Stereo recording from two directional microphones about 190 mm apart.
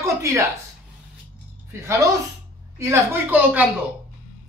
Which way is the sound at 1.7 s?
15° right (ahead or behind).